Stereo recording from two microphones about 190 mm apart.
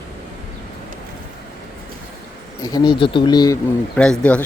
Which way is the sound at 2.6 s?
20° left (ahead or behind).